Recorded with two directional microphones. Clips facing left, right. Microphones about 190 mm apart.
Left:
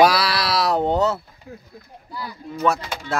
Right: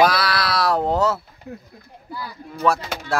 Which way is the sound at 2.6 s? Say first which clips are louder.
Right 1 dB; centre (ahead or behind).